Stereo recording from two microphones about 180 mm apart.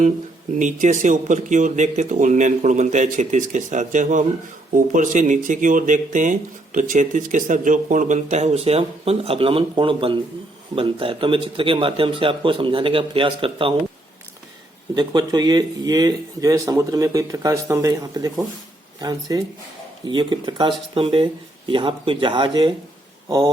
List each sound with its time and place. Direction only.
0.6 s speech: 45° right (ahead or behind)
14.9 s speech: 25° right (ahead or behind)